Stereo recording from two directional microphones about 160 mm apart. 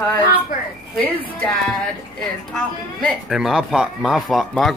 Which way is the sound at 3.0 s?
Centre (ahead or behind).